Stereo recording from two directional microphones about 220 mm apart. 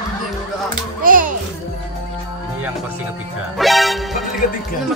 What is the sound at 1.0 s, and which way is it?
Music, 40° right (ahead or behind).